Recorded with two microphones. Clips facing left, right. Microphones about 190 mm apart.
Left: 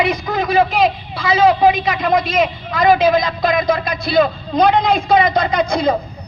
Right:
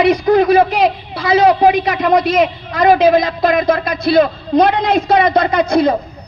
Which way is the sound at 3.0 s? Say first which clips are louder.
Right 3 dB; 60° right (ahead or behind).